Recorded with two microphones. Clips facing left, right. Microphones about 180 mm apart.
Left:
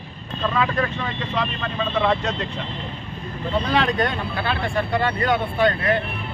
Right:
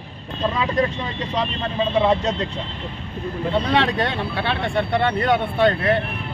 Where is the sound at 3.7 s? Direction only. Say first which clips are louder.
Right 1 dB; 25° right (ahead or behind).